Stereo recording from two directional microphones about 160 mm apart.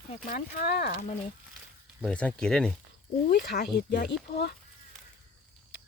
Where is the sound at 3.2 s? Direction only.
90° left.